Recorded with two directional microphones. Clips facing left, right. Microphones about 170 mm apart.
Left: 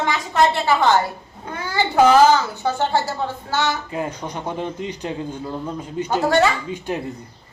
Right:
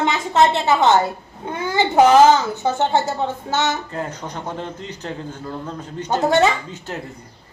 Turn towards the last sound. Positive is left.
turn(degrees=15)  # may be behind; listen again after turning